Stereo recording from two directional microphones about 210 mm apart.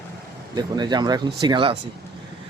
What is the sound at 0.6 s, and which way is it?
Speech, 20° right (ahead or behind).